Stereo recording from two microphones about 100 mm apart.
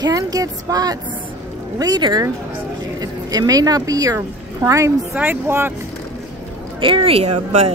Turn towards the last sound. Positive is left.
turn(degrees=-90)